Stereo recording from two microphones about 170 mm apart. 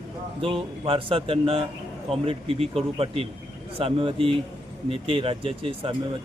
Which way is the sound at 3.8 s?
30° right (ahead or behind).